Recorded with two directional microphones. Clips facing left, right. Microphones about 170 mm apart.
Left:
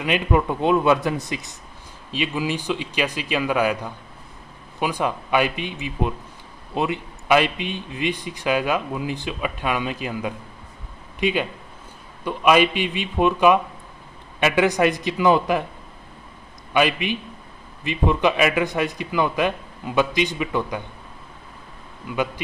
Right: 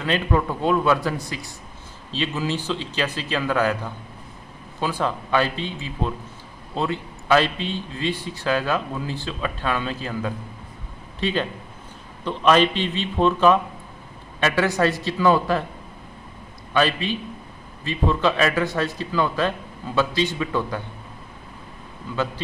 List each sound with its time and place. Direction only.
0.0 s a man's voice: 15° left (ahead or behind)
16.7 s a man's voice: 15° left (ahead or behind)